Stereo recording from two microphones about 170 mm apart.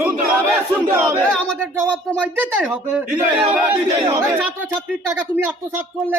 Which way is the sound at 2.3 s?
10° right (ahead or behind).